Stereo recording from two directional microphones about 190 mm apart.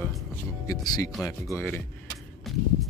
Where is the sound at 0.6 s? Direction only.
20° left (ahead or behind).